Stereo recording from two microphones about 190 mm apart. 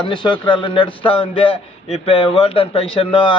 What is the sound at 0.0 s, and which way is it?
A man's voice, 25° left (ahead or behind).